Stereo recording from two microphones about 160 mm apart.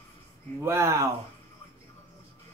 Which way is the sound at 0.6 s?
15° right (ahead or behind).